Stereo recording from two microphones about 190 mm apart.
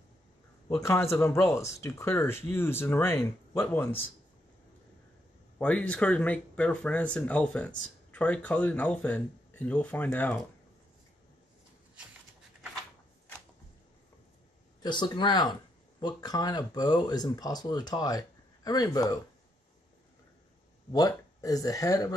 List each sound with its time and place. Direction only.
1.1 s speech: 15° left (ahead or behind)
5.6 s speech: 5° left (ahead or behind)
14.8 s speech: 25° left (ahead or behind)
20.9 s speech: 20° left (ahead or behind)